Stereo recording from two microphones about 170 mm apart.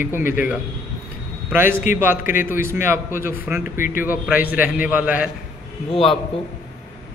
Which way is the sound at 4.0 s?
10° right (ahead or behind).